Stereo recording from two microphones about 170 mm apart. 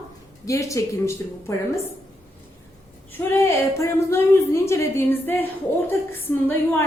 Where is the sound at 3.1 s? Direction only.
15° left (ahead or behind).